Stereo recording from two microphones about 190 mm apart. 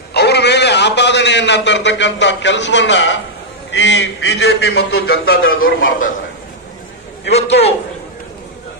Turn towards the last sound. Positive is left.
turn(degrees=35)  # may be behind; listen again after turning